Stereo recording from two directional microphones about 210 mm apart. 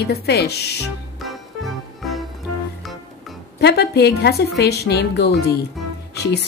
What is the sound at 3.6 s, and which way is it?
A woman's voice, 50° left (ahead or behind).